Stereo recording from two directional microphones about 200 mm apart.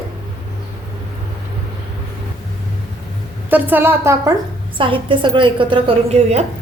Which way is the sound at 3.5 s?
10° right (ahead or behind).